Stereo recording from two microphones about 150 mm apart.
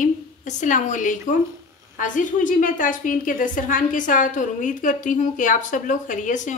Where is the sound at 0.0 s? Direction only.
55° left (ahead or behind).